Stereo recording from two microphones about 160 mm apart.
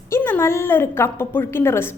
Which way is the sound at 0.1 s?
15° left (ahead or behind).